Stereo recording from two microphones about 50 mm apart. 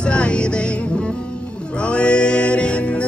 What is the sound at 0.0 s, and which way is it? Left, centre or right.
Music, left.